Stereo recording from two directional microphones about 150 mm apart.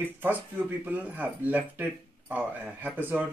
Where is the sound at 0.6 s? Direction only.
10° right (ahead or behind).